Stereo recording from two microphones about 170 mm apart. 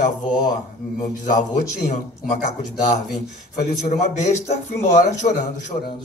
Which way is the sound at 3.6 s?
40° left (ahead or behind).